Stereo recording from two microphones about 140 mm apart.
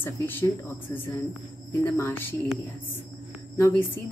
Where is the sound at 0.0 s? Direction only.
15° left (ahead or behind).